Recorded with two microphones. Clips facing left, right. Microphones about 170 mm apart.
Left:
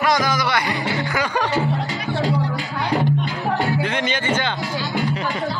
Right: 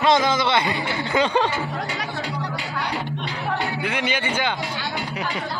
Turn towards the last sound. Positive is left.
turn(degrees=-10)  # may be behind; listen again after turning